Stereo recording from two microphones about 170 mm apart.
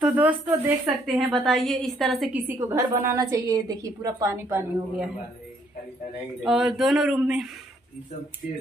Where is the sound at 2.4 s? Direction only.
15° right (ahead or behind).